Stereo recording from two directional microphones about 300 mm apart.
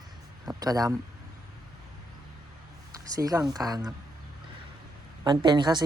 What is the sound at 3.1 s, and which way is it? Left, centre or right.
Speech, centre.